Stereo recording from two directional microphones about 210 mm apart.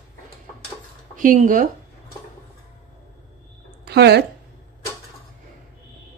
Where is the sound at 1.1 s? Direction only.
40° right (ahead or behind).